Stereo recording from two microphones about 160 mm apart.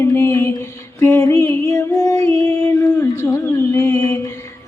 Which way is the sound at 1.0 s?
20° left (ahead or behind).